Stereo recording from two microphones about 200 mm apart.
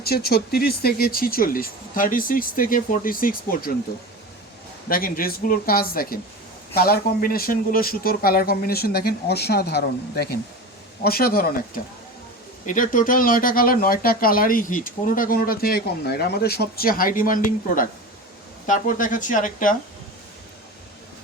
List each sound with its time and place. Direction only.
0.0 s speech: 50° left (ahead or behind)
4.9 s speech: 45° left (ahead or behind)
12.6 s a woman's voice: 40° left (ahead or behind)